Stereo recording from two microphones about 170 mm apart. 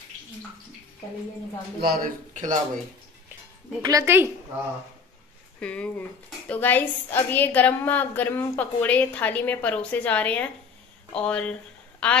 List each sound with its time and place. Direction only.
1.8 s speech: 60° right (ahead or behind)
3.8 s a woman's voice: 15° right (ahead or behind)
5.6 s a woman's voice: 5° left (ahead or behind)